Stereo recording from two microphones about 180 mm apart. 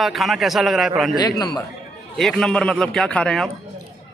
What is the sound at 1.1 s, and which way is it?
Speech, 20° left (ahead or behind).